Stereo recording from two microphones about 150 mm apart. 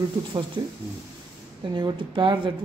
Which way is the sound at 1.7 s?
30° right (ahead or behind).